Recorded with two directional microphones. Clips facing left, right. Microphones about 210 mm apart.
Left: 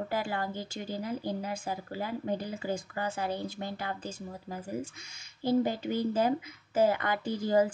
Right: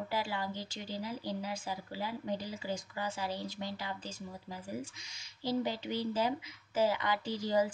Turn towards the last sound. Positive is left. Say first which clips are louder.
# left 5 dB
turn(degrees=50)  # may be behind; listen again after turning